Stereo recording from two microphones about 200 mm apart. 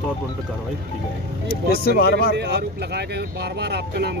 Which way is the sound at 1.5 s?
50° left (ahead or behind).